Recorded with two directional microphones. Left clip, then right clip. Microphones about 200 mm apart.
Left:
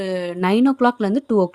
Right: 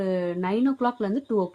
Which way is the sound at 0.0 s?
50° left (ahead or behind).